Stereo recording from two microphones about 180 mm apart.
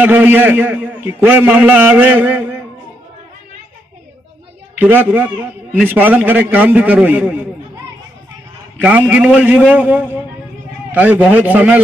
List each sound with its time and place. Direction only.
0.0 s a man's voice: 10° right (ahead or behind)
4.7 s a man's voice: 10° right (ahead or behind)
8.8 s a man's voice: 10° right (ahead or behind)